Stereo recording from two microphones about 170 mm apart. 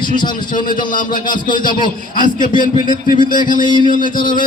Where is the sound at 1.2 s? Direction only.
25° left (ahead or behind).